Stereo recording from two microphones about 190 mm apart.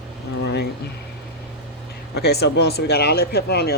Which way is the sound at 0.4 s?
60° left (ahead or behind).